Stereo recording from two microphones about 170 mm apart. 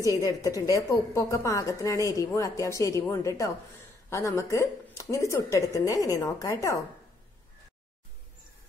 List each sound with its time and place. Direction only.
0.2 s a woman's voice: 20° left (ahead or behind)